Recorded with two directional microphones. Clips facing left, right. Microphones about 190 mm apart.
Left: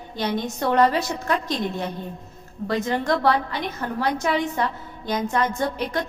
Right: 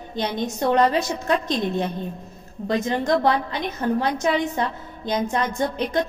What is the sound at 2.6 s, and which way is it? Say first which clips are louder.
A woman's voice: right 1 dB; 20° right (ahead or behind).